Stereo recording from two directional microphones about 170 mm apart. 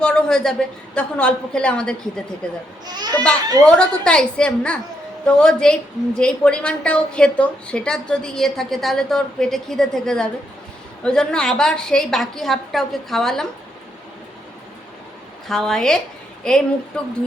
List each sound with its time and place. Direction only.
0.0 s a woman's voice: 5° left (ahead or behind)
2.8 s speech: 25° right (ahead or behind)
3.8 s a woman's voice: 5° left (ahead or behind)
15.4 s a woman's voice: 5° left (ahead or behind)